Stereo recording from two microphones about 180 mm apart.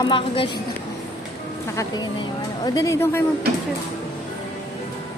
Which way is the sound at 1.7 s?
15° left (ahead or behind).